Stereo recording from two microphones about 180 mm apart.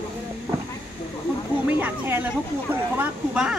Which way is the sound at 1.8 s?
10° right (ahead or behind).